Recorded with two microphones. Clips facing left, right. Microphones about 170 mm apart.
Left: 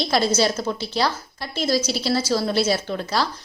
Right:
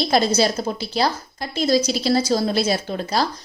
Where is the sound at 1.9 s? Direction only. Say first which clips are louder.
Right 3 dB; 15° right (ahead or behind).